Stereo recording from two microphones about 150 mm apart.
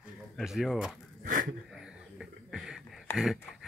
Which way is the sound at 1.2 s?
65° right (ahead or behind).